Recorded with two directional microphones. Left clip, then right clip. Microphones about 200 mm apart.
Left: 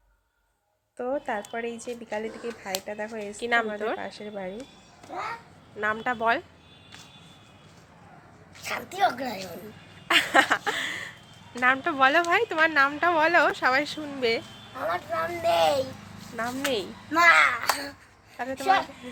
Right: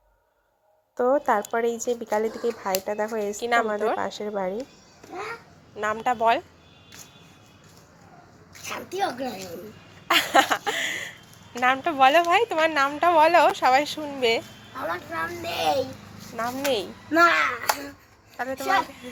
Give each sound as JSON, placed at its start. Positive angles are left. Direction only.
{"t": 0.9, "sound": "speech", "side_deg": -15}
{"t": 3.4, "sound": "a woman's voice", "side_deg": 10}
{"t": 3.9, "sound": "speech", "side_deg": -20}
{"t": 5.8, "sound": "a woman's voice", "side_deg": 5}
{"t": 8.6, "sound": "speech", "side_deg": 25}
{"t": 10.1, "sound": "a sound", "side_deg": 10}
{"t": 11.6, "sound": "a woman's voice", "side_deg": 10}
{"t": 14.8, "sound": "speech", "side_deg": 25}
{"t": 16.3, "sound": "a woman's voice", "side_deg": 5}
{"t": 17.1, "sound": "speech", "side_deg": 20}
{"t": 18.3, "sound": "a man's voice", "side_deg": 5}